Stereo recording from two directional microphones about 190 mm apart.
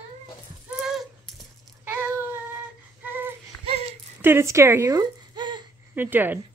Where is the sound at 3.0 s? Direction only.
10° right (ahead or behind).